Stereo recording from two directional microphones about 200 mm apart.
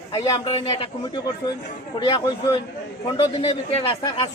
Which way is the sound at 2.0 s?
25° left (ahead or behind).